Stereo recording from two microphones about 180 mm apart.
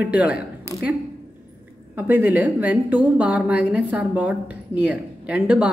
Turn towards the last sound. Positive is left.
turn(degrees=-5)  # may be behind; listen again after turning